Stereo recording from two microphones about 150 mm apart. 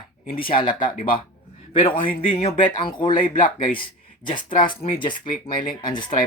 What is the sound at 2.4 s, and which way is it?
Speech, 35° left (ahead or behind).